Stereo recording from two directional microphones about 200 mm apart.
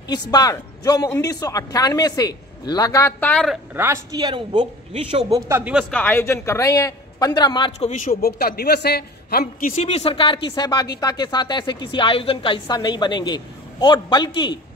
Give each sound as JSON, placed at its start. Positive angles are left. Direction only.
{"t": 0.1, "sound": "speech", "side_deg": 20}
{"t": 3.7, "sound": "a man's voice", "side_deg": -10}
{"t": 5.5, "sound": "speech", "side_deg": -5}
{"t": 7.9, "sound": "a man's voice", "side_deg": 45}